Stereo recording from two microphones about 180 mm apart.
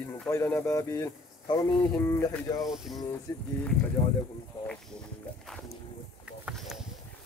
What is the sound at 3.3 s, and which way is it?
Speech, 15° left (ahead or behind).